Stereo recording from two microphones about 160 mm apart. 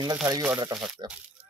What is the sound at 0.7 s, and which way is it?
Speech, 5° right (ahead or behind).